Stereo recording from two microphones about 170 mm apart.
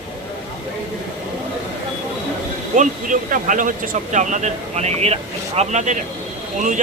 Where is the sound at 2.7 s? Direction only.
50° right (ahead or behind).